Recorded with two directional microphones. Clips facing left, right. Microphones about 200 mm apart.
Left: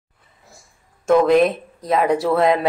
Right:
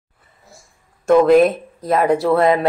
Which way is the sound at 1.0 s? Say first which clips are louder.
Right 3 dB; centre (ahead or behind).